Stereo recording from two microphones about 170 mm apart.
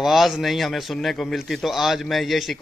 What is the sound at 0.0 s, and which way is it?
A man's voice, centre (ahead or behind).